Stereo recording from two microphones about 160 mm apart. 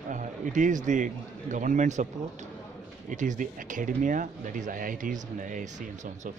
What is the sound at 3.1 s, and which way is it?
A man's voice, 50° right (ahead or behind).